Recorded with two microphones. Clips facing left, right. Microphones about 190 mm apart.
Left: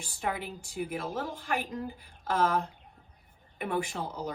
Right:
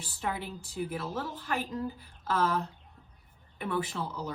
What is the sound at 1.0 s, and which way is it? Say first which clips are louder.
Speech: left 1 dB; 50° left (ahead or behind).